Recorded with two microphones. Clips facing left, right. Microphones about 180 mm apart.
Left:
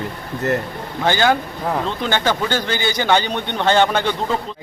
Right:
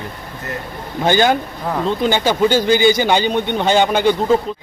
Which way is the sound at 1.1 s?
20° right (ahead or behind).